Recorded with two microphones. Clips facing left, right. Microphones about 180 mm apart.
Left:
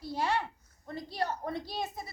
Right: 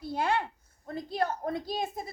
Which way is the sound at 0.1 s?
55° right (ahead or behind).